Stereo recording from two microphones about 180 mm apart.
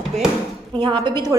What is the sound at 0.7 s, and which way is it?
Speech, 25° right (ahead or behind).